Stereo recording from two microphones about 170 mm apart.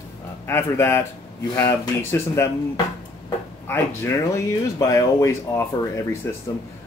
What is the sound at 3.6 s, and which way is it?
Speech, 15° left (ahead or behind).